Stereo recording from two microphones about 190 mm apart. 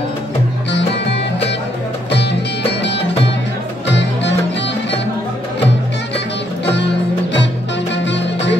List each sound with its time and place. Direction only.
0.7 s music: 65° left (ahead or behind)
3.8 s music: 65° left (ahead or behind)
6.1 s music: 65° left (ahead or behind)
7.9 s music: 65° left (ahead or behind)